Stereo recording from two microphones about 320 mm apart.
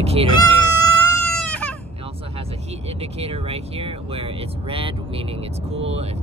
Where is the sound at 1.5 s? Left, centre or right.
Centre.